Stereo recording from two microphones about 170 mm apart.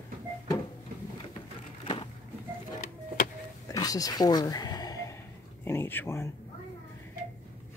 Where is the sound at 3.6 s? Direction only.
20° left (ahead or behind).